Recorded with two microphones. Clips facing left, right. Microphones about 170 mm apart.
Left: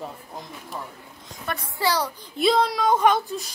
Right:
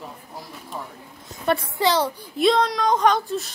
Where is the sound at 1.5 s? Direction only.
20° right (ahead or behind).